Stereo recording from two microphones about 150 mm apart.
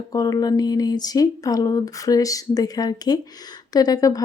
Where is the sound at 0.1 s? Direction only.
25° left (ahead or behind).